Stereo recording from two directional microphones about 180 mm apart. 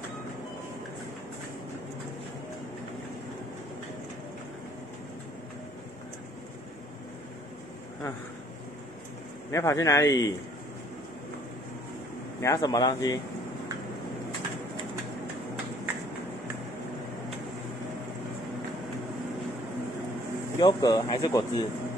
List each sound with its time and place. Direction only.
9.5 s a man's voice: 15° left (ahead or behind)
12.4 s speech: 20° left (ahead or behind)
20.5 s speech: 20° left (ahead or behind)